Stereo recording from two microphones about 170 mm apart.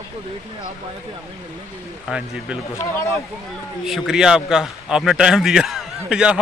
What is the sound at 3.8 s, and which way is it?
A man's voice, centre (ahead or behind).